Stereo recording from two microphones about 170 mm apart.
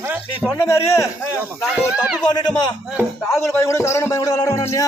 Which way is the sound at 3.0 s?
15° left (ahead or behind).